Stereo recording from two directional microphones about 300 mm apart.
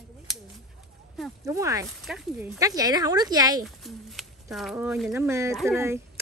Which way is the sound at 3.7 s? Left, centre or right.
Centre.